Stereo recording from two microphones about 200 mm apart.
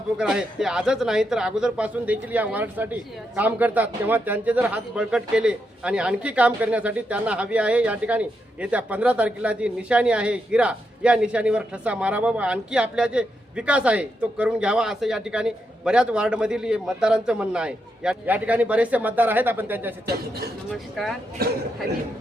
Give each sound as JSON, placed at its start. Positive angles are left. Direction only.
{"t": 0.2, "sound": "a man's voice", "side_deg": -5}
{"t": 20.1, "sound": "a man's voice", "side_deg": -50}
{"t": 20.7, "sound": "a man's voice", "side_deg": 0}
{"t": 21.4, "sound": "a man's voice", "side_deg": -50}